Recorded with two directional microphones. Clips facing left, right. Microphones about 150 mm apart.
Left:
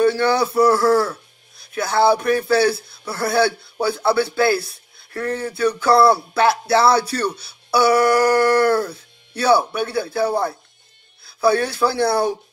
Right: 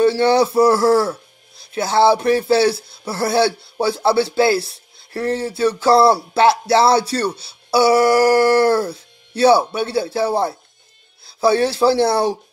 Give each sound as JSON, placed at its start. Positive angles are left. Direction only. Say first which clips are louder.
{"t": 0.2, "sound": "speech", "louder": "right 3 dB", "side_deg": -30}